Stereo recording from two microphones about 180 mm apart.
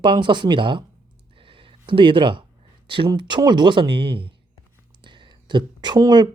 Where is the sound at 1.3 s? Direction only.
30° right (ahead or behind).